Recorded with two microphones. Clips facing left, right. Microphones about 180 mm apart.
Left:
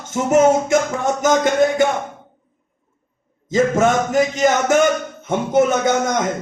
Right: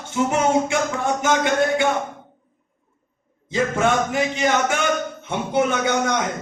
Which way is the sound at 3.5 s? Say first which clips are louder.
Left 4 dB; 40° left (ahead or behind).